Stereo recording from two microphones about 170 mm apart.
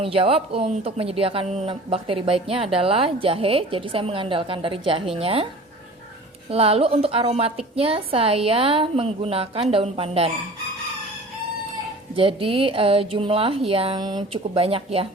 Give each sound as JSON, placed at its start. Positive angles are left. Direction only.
{"t": 0.0, "sound": "speech", "side_deg": -35}
{"t": 6.5, "sound": "speech", "side_deg": -35}
{"t": 12.1, "sound": "speech", "side_deg": -30}